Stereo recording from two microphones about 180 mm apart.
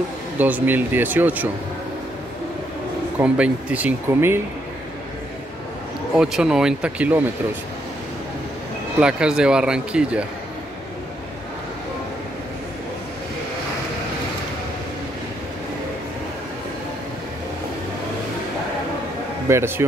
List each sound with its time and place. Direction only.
0.4 s speech: 10° right (ahead or behind)
3.2 s speech: 5° right (ahead or behind)
6.1 s speech: 5° right (ahead or behind)
9.0 s speech: 5° right (ahead or behind)
19.4 s speech: 15° right (ahead or behind)